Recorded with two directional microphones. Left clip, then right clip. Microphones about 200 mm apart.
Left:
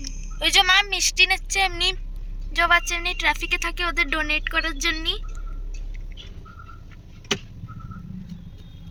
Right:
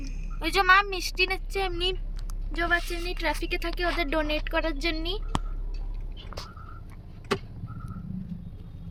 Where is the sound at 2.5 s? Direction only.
10° left (ahead or behind).